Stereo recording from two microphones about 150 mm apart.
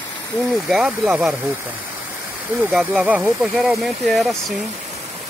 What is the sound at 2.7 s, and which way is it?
Speech, 5° right (ahead or behind).